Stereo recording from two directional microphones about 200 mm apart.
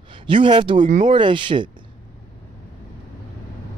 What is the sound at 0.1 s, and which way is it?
Speech, 25° right (ahead or behind).